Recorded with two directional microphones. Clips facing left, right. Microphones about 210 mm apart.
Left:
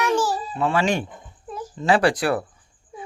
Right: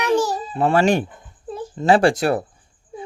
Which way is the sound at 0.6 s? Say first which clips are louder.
Right 5 dB; 45° right (ahead or behind).